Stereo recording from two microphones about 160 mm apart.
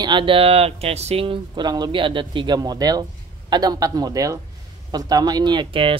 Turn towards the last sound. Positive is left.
turn(degrees=-35)  # may be behind; listen again after turning